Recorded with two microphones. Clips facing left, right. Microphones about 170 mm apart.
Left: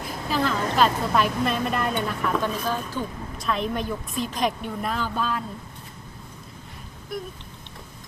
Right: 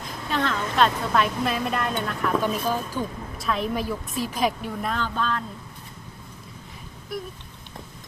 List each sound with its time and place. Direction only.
0.3 s a woman's voice: 5° left (ahead or behind)
2.4 s a woman's voice: 10° right (ahead or behind); by 5.4 s 10° left (ahead or behind)